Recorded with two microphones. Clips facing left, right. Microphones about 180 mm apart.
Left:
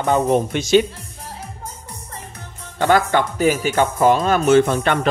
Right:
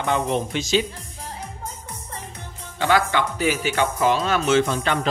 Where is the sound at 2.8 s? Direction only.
45° left (ahead or behind).